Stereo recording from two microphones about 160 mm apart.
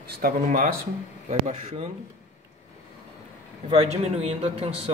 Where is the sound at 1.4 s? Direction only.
50° right (ahead or behind).